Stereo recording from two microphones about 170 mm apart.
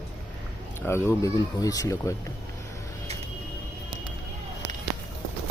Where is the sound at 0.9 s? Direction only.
15° left (ahead or behind).